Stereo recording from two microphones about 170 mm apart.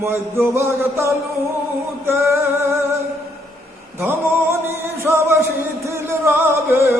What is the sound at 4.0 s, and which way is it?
Singing, 15° right (ahead or behind).